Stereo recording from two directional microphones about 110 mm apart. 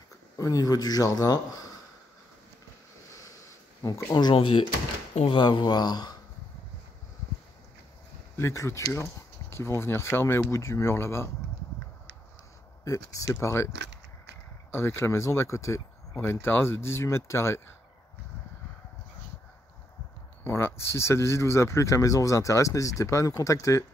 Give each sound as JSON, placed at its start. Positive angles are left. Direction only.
{"t": 0.4, "sound": "a man's voice", "side_deg": 35}
{"t": 3.8, "sound": "a man's voice", "side_deg": 35}
{"t": 4.4, "sound": "a man's voice", "side_deg": 50}
{"t": 8.4, "sound": "speech", "side_deg": 25}
{"t": 12.8, "sound": "speech", "side_deg": 30}
{"t": 14.7, "sound": "speech", "side_deg": 20}
{"t": 20.4, "sound": "speech", "side_deg": 25}